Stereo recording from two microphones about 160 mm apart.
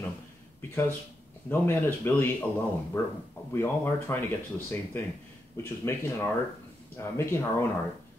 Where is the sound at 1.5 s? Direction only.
15° left (ahead or behind).